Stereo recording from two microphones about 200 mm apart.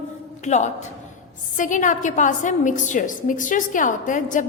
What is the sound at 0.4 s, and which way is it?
A woman's voice, 35° left (ahead or behind).